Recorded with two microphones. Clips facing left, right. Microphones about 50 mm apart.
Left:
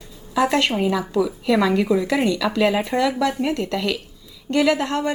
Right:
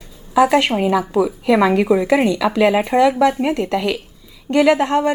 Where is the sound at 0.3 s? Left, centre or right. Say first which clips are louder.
Right 5 dB; centre.